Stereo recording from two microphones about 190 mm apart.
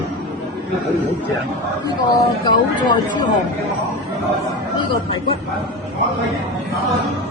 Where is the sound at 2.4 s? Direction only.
25° left (ahead or behind).